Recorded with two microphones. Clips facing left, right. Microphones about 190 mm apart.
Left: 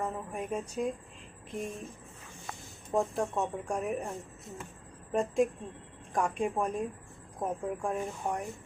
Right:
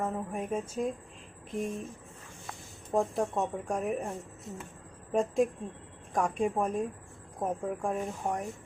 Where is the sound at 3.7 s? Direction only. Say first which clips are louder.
Right 2 dB; centre (ahead or behind).